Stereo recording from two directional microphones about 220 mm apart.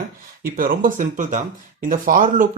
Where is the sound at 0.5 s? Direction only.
40° right (ahead or behind).